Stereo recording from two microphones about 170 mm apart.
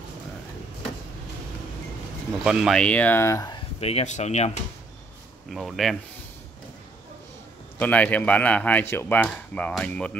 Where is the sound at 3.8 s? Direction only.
35° left (ahead or behind).